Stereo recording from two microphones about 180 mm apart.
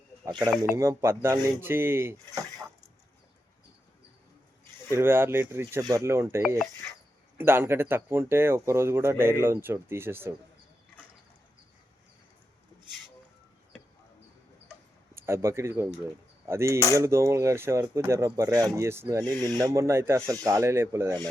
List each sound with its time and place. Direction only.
0.3 s speech: 25° right (ahead or behind)
4.9 s speech: 15° right (ahead or behind)
15.1 s speech: 15° right (ahead or behind)